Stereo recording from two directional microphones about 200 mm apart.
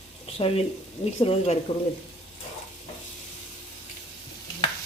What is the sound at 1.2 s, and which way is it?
Speech, 30° left (ahead or behind).